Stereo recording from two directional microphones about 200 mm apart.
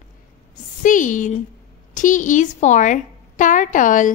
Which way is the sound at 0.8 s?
40° left (ahead or behind).